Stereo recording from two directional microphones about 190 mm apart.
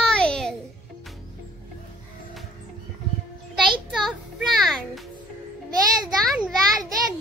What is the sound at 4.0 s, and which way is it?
Music, centre (ahead or behind).